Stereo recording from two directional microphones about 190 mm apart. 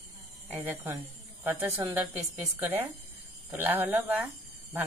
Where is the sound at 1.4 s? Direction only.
10° right (ahead or behind).